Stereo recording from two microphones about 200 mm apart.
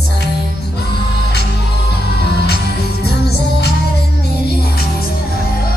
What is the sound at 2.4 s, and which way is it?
Music, 55° left (ahead or behind).